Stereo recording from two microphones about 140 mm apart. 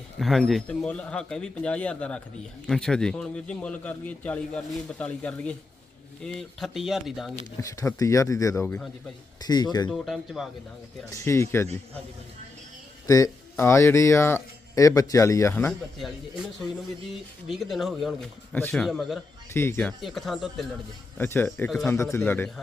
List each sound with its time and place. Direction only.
0.2 s a man's voice: centre (ahead or behind)
7.6 s speech: 25° left (ahead or behind)
9.9 s speech: centre (ahead or behind)
11.1 s speech: 20° left (ahead or behind)
13.1 s speech: 25° left (ahead or behind)
16.0 s speech: centre (ahead or behind)
19.5 s a man's voice: 15° left (ahead or behind)
19.8 s speech: centre (ahead or behind)
21.2 s a man's voice: 15° left (ahead or behind)